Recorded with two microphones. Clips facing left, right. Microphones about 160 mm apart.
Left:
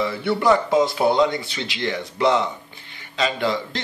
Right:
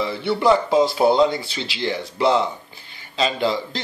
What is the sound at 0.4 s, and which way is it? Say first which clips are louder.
Speech: right 1 dB; 30° right (ahead or behind).